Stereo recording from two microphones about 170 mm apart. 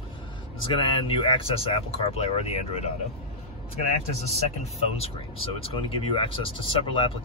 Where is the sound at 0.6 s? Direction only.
30° left (ahead or behind).